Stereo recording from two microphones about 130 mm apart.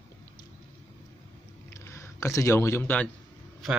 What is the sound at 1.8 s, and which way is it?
Speech, 20° left (ahead or behind).